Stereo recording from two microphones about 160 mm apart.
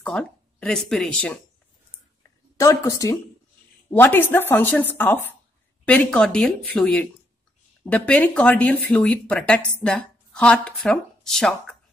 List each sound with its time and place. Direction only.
0.0 s speech: 5° left (ahead or behind)
2.5 s speech: 20° left (ahead or behind); by 11.7 s centre (ahead or behind)